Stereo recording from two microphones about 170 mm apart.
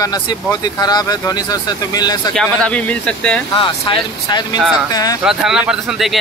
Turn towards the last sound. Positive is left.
turn(degrees=0)  # may be behind; listen again after turning